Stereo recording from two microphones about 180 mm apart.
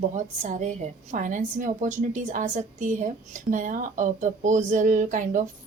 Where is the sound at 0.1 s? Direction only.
45° right (ahead or behind).